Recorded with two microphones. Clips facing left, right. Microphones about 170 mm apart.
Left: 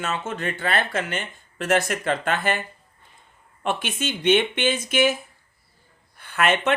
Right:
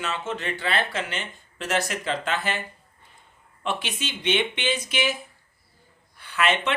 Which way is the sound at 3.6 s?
50° left (ahead or behind).